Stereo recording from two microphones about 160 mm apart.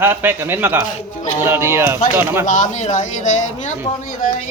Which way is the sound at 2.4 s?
50° left (ahead or behind).